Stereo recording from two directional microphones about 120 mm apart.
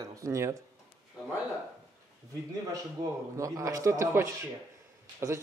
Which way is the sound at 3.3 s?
25° right (ahead or behind).